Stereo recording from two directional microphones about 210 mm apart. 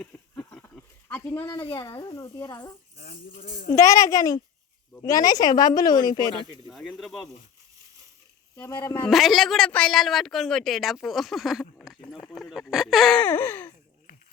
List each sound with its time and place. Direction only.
0.0 s a sound: 5° left (ahead or behind)
1.5 s a child's voice: 15° left (ahead or behind)
3.0 s speech: 40° left (ahead or behind)
3.7 s a child's voice: 15° left (ahead or behind)
6.7 s speech: centre (ahead or behind)
8.5 s a child's voice: 10° left (ahead or behind)
9.0 s speech: centre (ahead or behind)